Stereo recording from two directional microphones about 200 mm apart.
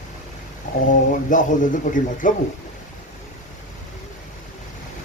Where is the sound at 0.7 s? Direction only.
40° left (ahead or behind).